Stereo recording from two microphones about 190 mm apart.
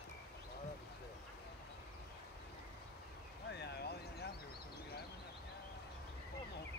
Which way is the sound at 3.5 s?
60° left (ahead or behind).